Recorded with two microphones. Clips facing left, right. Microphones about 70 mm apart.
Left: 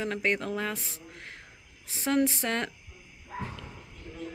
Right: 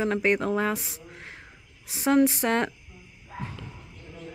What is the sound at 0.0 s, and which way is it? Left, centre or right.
A woman's voice, centre.